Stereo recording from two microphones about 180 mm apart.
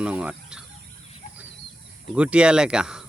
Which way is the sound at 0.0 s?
5° right (ahead or behind).